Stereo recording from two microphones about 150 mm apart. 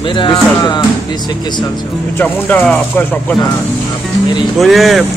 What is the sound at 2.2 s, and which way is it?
Speech, 10° left (ahead or behind).